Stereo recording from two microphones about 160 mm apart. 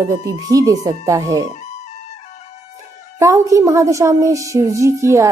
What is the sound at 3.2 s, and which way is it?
A woman's voice, 20° right (ahead or behind).